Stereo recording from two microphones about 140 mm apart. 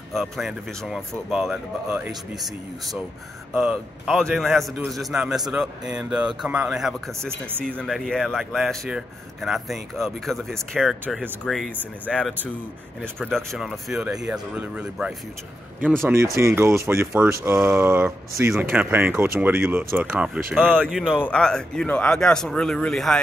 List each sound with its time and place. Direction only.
0.1 s speech: centre (ahead or behind)
7.2 s speech: 15° right (ahead or behind)
7.6 s speech: 5° left (ahead or behind)
16.3 s speech: 20° right (ahead or behind)
20.7 s speech: 5° left (ahead or behind)
21.0 s speech: 10° right (ahead or behind)
21.3 s speech: 5° left (ahead or behind)